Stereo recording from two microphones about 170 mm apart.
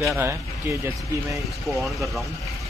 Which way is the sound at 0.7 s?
15° right (ahead or behind).